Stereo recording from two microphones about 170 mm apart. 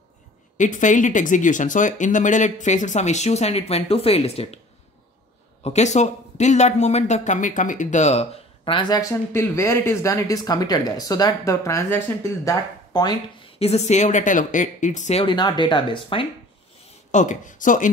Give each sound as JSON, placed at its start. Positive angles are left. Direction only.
{"t": 0.6, "sound": "speech", "side_deg": 50}
{"t": 5.6, "sound": "speech", "side_deg": 40}
{"t": 13.6, "sound": "speech", "side_deg": 35}
{"t": 15.2, "sound": "speech", "side_deg": 25}
{"t": 17.1, "sound": "speech", "side_deg": 45}